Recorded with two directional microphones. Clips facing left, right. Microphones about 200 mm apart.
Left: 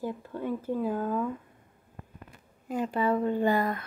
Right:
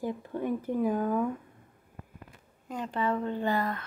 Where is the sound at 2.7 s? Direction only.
10° left (ahead or behind).